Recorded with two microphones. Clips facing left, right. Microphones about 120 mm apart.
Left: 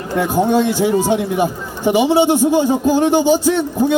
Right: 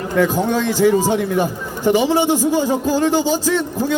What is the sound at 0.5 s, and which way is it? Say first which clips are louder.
A man's voice: even; 15° left (ahead or behind).